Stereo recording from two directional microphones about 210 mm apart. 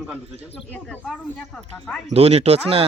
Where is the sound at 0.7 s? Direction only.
5° left (ahead or behind).